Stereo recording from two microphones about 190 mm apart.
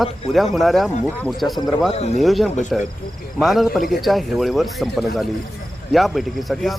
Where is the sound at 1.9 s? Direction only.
35° left (ahead or behind).